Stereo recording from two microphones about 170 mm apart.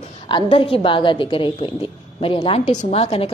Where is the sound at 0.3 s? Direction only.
30° left (ahead or behind).